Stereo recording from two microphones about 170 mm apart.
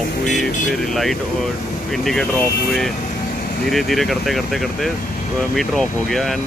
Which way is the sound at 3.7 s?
Centre (ahead or behind).